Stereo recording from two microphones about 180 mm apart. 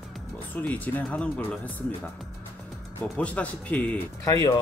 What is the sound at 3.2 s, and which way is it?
Speech, 5° left (ahead or behind).